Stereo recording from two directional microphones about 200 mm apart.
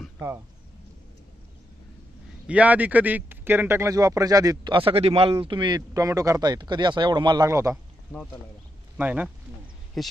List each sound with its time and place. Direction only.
2.4 s speech: 5° right (ahead or behind)
7.7 s a sound: centre (ahead or behind)
8.9 s speech: 5° right (ahead or behind)